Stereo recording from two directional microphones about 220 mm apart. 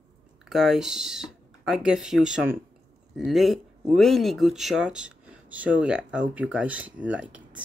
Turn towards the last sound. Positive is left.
turn(degrees=-5)  # may be behind; listen again after turning